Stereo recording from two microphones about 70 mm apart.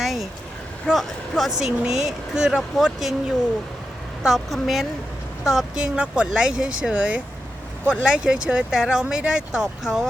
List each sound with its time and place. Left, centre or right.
0.0 s vehicle: centre
0.9 s speech: centre